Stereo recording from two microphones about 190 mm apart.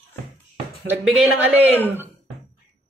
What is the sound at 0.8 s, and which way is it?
Speech, 10° right (ahead or behind).